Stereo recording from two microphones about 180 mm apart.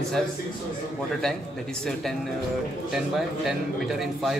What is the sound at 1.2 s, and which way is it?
A man's voice, 5° left (ahead or behind).